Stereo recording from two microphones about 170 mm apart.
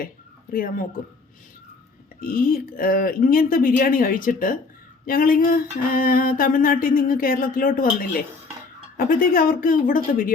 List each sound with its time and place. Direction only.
0.5 s speech: 55° left (ahead or behind)
2.2 s speech: 55° left (ahead or behind)